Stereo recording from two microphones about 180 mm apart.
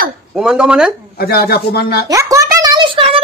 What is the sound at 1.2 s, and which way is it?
Speech, 60° left (ahead or behind).